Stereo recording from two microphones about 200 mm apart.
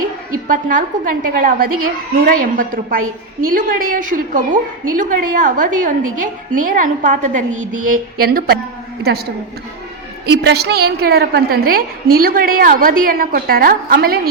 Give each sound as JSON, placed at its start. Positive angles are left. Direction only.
{"t": 0.4, "sound": "a woman's voice", "side_deg": -40}
{"t": 10.2, "sound": "a woman's voice", "side_deg": -55}